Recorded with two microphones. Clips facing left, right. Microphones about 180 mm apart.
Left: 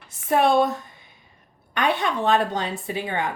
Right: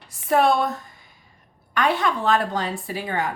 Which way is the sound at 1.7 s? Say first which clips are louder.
Right 1 dB; 20° left (ahead or behind).